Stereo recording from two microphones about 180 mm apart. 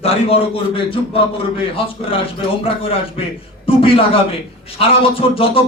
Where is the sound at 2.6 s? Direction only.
30° left (ahead or behind).